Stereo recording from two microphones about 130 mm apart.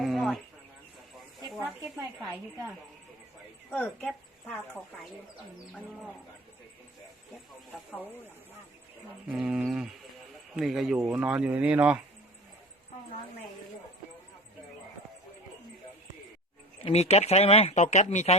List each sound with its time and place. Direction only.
0.0 s a sound: centre (ahead or behind)
3.8 s a woman's voice: 10° left (ahead or behind)
9.3 s speech: 10° right (ahead or behind)
16.8 s speech: 55° left (ahead or behind)
17.8 s speech: 65° left (ahead or behind)